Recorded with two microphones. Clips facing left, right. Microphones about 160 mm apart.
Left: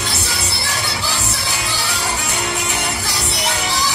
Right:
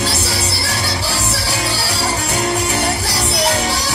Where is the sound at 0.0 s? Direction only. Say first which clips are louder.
Right 5 dB; 35° right (ahead or behind).